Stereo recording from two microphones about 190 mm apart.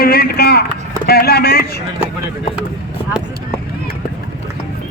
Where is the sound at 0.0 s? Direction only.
55° left (ahead or behind).